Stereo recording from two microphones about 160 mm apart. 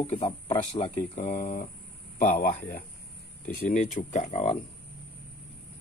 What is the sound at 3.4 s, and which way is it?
Speech, 50° left (ahead or behind).